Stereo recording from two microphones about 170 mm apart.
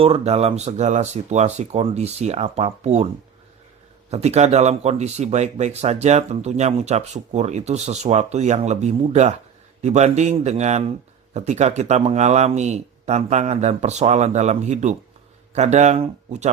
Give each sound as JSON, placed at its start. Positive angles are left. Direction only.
{"t": 0.0, "sound": "speech", "side_deg": -35}
{"t": 4.1, "sound": "speech", "side_deg": -40}